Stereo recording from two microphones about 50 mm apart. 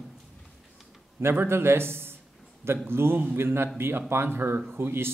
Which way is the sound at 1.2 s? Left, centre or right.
Right.